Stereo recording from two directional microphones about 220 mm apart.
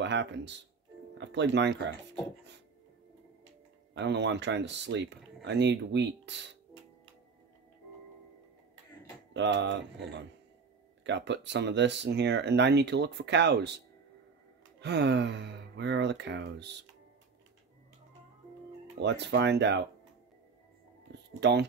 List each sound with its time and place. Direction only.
0.0 s speech: 55° right (ahead or behind)
3.9 s speech: 50° right (ahead or behind)
9.3 s speech: 55° right (ahead or behind)
11.1 s speech: 55° right (ahead or behind)
14.8 s speech: 50° right (ahead or behind)
18.9 s speech: 50° right (ahead or behind)
21.1 s a sound: 50° right (ahead or behind)